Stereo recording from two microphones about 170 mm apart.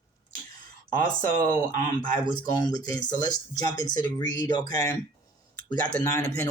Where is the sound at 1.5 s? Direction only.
50° right (ahead or behind).